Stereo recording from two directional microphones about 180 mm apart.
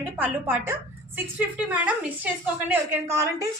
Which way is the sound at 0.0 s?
10° right (ahead or behind).